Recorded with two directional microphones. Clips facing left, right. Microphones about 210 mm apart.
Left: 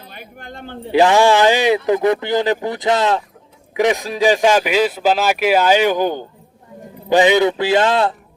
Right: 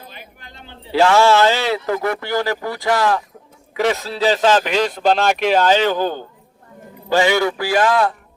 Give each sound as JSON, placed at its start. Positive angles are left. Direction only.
{"t": 0.1, "sound": "speech", "side_deg": 50}
{"t": 0.9, "sound": "a man's voice", "side_deg": 15}